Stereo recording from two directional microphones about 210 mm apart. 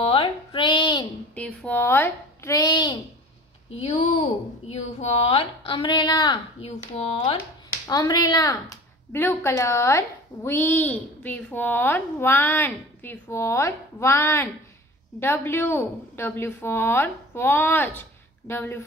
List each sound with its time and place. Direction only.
0.0 s a sound: 25° left (ahead or behind)
1.3 s a child's voice: 5° left (ahead or behind)
3.8 s speech: 30° left (ahead or behind)
7.0 s speech: 30° left (ahead or behind)
7.8 s speech: 20° left (ahead or behind)